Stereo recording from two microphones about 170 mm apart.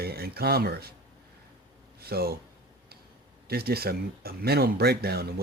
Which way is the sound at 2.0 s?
65° right (ahead or behind).